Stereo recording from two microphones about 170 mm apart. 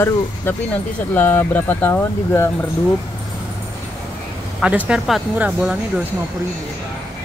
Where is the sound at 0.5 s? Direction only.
15° left (ahead or behind).